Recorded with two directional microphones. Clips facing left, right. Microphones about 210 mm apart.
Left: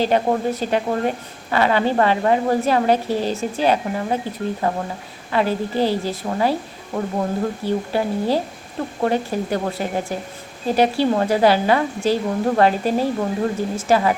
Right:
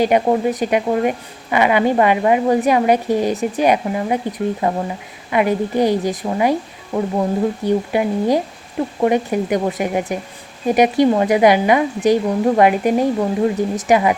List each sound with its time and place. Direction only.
0.0 s a woman's voice: 15° right (ahead or behind)